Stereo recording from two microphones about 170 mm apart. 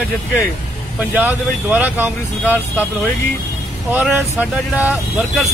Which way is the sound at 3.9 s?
10° right (ahead or behind).